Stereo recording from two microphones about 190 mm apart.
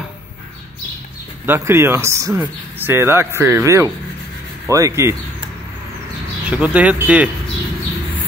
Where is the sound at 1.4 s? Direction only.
10° right (ahead or behind).